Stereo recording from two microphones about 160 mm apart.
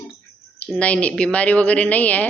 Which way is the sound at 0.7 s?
10° left (ahead or behind).